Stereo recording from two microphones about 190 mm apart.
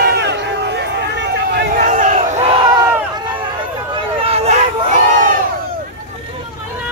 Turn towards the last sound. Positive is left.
turn(degrees=-40)  # may be behind; listen again after turning